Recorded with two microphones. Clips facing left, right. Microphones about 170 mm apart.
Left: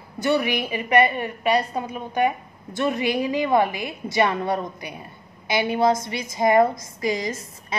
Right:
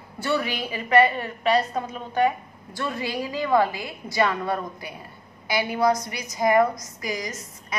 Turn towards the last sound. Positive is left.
turn(degrees=30)  # may be behind; listen again after turning